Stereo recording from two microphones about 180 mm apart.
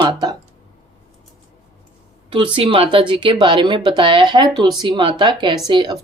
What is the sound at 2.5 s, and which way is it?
A woman's voice, 30° right (ahead or behind).